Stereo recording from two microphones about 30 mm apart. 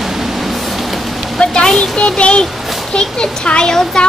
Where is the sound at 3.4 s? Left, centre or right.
Left.